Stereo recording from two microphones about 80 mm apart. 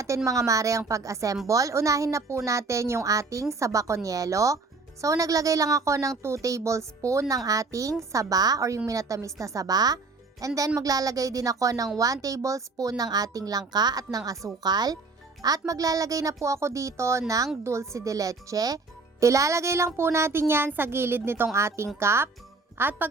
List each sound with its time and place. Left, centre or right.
0.3 s a woman's voice: right